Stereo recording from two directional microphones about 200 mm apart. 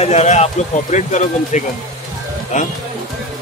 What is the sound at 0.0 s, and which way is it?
Speech, 35° left (ahead or behind).